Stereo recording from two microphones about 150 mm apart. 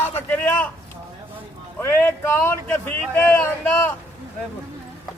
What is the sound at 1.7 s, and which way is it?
A man's voice, 15° left (ahead or behind).